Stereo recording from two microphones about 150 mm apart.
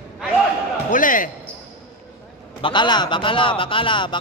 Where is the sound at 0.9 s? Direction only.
65° left (ahead or behind).